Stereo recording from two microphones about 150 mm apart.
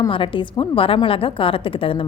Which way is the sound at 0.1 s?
35° left (ahead or behind).